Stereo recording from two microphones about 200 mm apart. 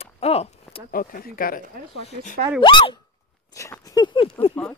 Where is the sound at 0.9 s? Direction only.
45° left (ahead or behind).